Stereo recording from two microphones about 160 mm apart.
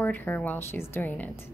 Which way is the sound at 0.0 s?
10° left (ahead or behind).